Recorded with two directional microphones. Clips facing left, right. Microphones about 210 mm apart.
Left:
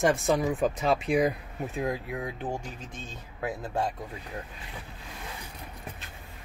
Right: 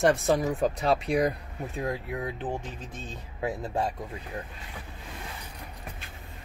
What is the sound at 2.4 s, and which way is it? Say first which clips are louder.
Speech: right 1 dB; 10° left (ahead or behind).